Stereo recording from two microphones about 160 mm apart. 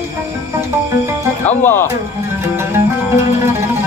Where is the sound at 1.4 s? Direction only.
10° left (ahead or behind).